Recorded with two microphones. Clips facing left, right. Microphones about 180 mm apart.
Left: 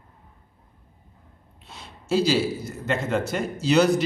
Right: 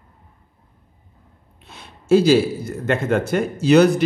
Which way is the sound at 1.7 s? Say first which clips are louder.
Right 10 dB; 55° right (ahead or behind).